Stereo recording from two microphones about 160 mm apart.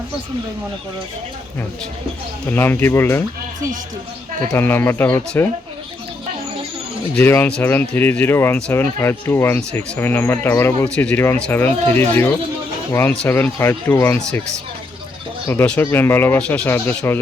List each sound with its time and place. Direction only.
2.5 s speech: 10° left (ahead or behind)
4.5 s speech: 15° left (ahead or behind)
7.2 s speech: 10° left (ahead or behind)
15.4 s speech: 10° left (ahead or behind)